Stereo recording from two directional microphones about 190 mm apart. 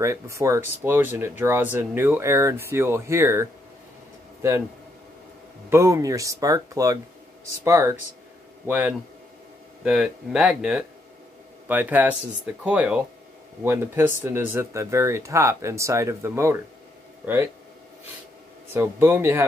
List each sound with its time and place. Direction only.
0.0 s speech: 15° right (ahead or behind)
5.7 s speech: 15° right (ahead or behind)
18.7 s speech: 10° right (ahead or behind)